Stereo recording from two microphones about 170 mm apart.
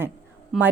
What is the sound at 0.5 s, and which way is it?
Speech, centre (ahead or behind).